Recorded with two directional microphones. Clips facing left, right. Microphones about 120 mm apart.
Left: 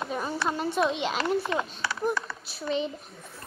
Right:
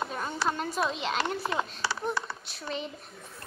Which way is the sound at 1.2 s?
30° right (ahead or behind).